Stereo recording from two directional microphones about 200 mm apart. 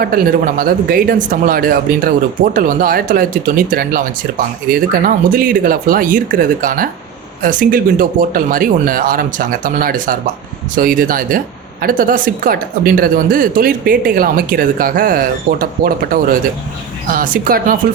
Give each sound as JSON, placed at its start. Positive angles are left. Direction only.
{"t": 0.0, "sound": "speech", "side_deg": -45}